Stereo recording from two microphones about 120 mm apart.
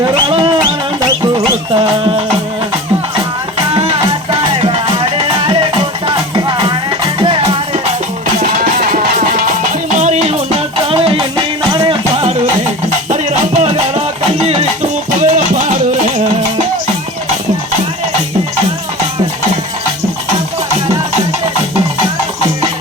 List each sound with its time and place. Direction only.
0.1 s music: 45° right (ahead or behind)
3.7 s music: 55° right (ahead or behind)
7.2 s music: 50° right (ahead or behind)
10.0 s music: 70° right (ahead or behind); by 12.4 s 55° right (ahead or behind)
13.1 s music: 75° right (ahead or behind)
15.2 s music: 80° right